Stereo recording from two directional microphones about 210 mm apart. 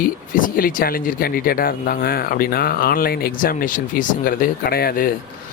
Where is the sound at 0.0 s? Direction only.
40° left (ahead or behind).